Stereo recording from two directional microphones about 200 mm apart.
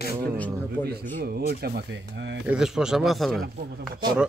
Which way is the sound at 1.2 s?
50° right (ahead or behind).